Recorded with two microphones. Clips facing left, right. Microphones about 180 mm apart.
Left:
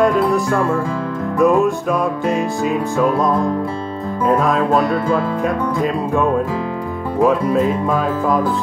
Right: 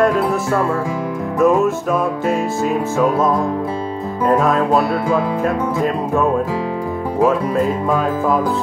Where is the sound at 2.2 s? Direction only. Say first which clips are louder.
Even; centre (ahead or behind).